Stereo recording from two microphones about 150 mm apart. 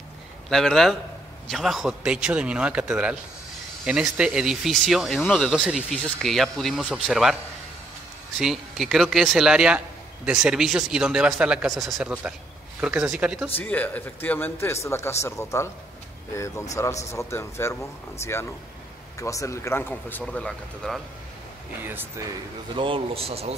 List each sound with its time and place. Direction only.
0.5 s a man's voice: centre (ahead or behind)
8.4 s a man's voice: 5° right (ahead or behind)
13.6 s speech: 10° left (ahead or behind)
16.7 s a man's voice: 20° left (ahead or behind)
21.8 s a man's voice: 15° right (ahead or behind)
22.8 s speech: 40° right (ahead or behind)